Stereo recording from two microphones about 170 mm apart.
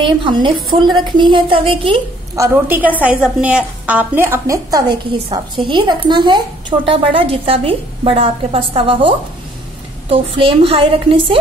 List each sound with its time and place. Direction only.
0.0 s a woman's voice: 30° right (ahead or behind)
2.3 s a woman's voice: 15° right (ahead or behind); by 11.3 s 30° right (ahead or behind)